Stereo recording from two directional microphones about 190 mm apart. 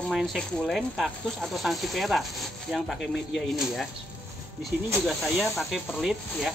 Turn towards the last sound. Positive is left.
turn(degrees=0)  # may be behind; listen again after turning